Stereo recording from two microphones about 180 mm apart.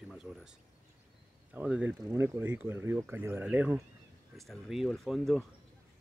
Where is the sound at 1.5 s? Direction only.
10° right (ahead or behind).